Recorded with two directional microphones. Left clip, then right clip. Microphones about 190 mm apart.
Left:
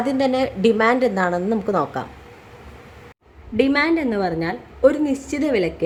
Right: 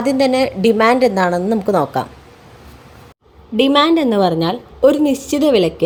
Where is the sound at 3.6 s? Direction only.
25° right (ahead or behind).